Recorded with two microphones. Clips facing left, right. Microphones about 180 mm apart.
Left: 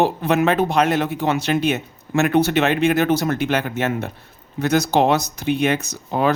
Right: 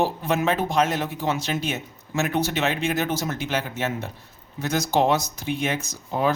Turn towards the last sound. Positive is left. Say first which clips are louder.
# left 4 dB
turn(degrees=65)  # may be behind; listen again after turning